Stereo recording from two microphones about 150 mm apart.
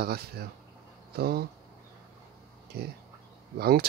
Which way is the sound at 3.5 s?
90° right.